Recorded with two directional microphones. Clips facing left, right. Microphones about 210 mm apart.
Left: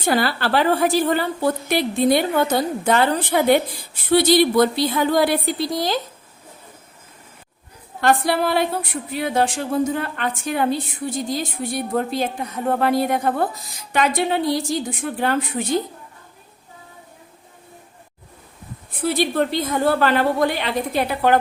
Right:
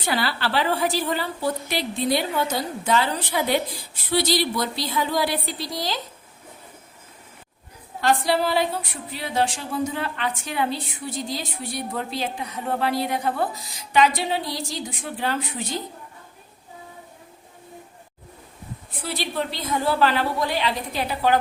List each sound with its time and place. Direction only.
0.0 s a woman's voice: 50° left (ahead or behind)
8.0 s speech: 55° left (ahead or behind)
19.0 s speech: 50° left (ahead or behind)